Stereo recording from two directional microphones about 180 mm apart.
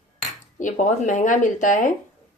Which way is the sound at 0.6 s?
45° left (ahead or behind).